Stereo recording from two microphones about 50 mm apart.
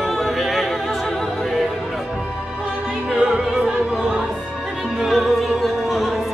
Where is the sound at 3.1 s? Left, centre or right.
Centre.